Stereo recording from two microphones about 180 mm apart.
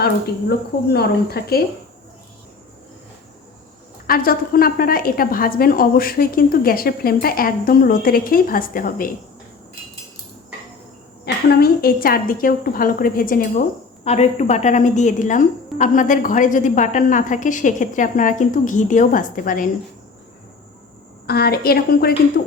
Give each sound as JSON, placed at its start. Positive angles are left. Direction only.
{"t": 0.9, "sound": "a woman's voice", "side_deg": 60}
{"t": 4.0, "sound": "a woman's voice", "side_deg": 55}
{"t": 11.4, "sound": "a woman's voice", "side_deg": 60}
{"t": 14.0, "sound": "a woman's voice", "side_deg": 40}
{"t": 21.2, "sound": "a woman's voice", "side_deg": 60}